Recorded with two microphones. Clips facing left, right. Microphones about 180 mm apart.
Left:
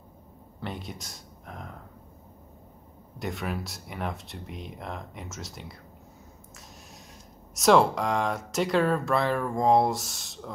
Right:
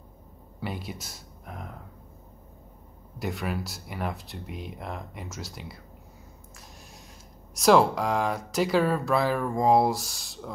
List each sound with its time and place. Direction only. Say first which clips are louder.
0.6 s speech: right 2 dB; 5° right (ahead or behind)
3.2 s speech: right 1 dB; centre (ahead or behind)
7.5 s speech: right 1 dB; centre (ahead or behind)